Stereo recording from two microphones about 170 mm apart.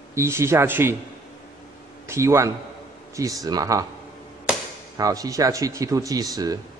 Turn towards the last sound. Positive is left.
turn(degrees=-20)  # may be behind; listen again after turning